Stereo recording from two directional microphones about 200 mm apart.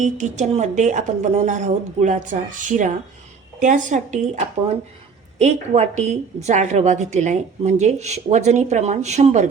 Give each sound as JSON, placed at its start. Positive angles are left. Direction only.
{"t": 0.0, "sound": "a woman's voice", "side_deg": -35}
{"t": 5.4, "sound": "a woman's voice", "side_deg": -35}